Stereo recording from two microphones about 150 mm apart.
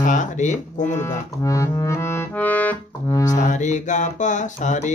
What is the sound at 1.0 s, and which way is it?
Accordion, 20° left (ahead or behind).